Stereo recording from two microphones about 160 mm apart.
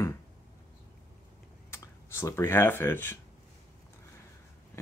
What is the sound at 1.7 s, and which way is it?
Speech, 15° left (ahead or behind).